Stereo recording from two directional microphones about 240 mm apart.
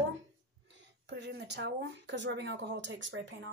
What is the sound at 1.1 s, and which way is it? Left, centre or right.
Speech, right.